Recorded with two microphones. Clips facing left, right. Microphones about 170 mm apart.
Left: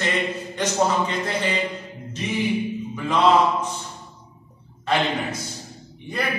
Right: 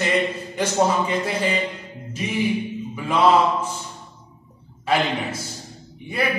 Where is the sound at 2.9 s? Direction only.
10° right (ahead or behind).